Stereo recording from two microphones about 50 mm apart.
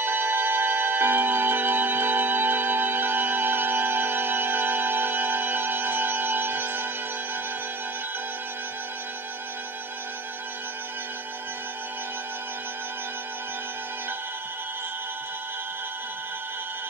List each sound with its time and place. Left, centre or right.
0.0 s music: right